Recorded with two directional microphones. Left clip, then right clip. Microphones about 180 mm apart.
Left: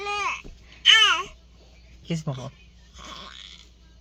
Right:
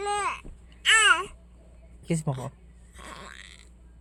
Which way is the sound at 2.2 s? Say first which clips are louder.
Right 1 dB; 30° right (ahead or behind).